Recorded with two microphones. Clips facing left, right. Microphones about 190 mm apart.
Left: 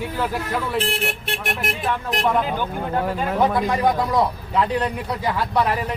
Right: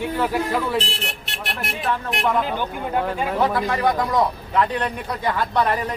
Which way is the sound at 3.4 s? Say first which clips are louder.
Left 2 dB; 10° left (ahead or behind).